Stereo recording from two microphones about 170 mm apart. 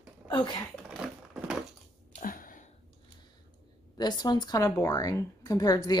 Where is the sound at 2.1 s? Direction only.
55° left (ahead or behind).